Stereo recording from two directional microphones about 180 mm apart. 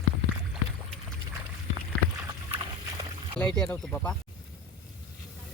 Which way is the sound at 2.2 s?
20° right (ahead or behind).